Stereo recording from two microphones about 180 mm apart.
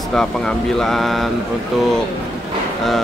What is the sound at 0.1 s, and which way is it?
Speech, 5° left (ahead or behind).